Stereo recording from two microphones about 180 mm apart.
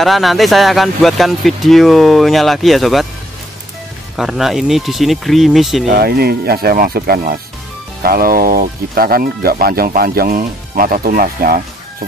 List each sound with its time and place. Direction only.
0.0 s speech: centre (ahead or behind)
4.2 s speech: centre (ahead or behind)
5.9 s speech: 60° right (ahead or behind)